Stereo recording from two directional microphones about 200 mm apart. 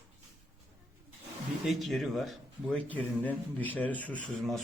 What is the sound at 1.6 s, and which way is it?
A man's voice, centre (ahead or behind).